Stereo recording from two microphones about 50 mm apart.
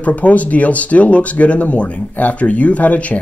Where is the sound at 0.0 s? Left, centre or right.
Left.